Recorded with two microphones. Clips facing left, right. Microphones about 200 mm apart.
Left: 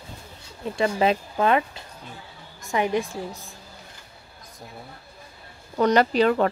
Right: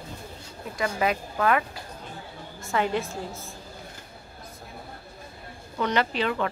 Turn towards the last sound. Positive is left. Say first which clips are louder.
# left 7 dB
turn(degrees=40)  # may be behind; listen again after turning